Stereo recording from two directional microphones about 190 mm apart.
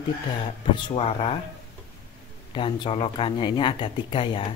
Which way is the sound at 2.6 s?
25° left (ahead or behind).